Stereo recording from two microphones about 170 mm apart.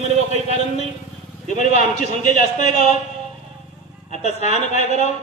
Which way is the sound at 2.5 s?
45° left (ahead or behind).